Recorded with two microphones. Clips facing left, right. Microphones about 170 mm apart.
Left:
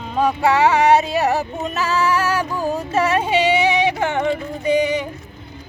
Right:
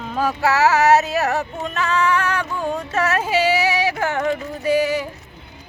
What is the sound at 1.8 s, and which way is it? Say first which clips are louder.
Music: even; 5° left (ahead or behind).